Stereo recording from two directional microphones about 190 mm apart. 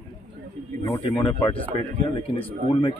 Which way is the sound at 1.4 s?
30° left (ahead or behind).